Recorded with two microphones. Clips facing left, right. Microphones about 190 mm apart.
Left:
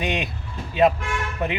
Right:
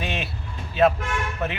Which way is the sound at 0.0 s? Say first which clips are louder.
Left 4 dB; 15° left (ahead or behind).